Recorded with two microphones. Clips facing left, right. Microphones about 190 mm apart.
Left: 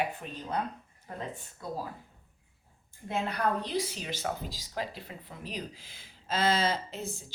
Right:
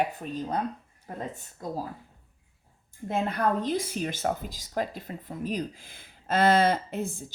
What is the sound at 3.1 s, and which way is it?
Speech, 50° right (ahead or behind).